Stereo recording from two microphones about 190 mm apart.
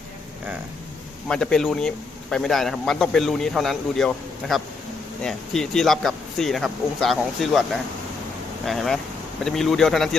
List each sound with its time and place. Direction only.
1.3 s speech: 5° left (ahead or behind)